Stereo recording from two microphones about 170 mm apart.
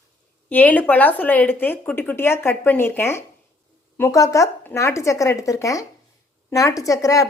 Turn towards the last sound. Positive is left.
turn(degrees=20)  # may be behind; listen again after turning